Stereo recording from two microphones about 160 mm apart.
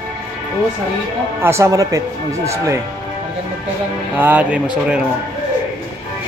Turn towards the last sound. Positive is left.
turn(degrees=-10)  # may be behind; listen again after turning